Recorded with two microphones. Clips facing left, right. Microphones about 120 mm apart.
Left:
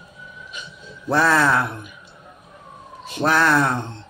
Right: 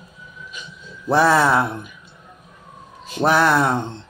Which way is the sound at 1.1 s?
20° right (ahead or behind).